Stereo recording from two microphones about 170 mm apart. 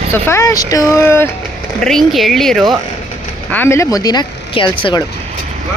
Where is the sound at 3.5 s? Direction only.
15° left (ahead or behind).